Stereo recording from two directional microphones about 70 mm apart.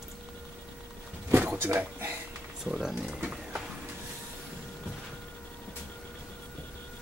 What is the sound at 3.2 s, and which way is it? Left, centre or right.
Wild animals, centre.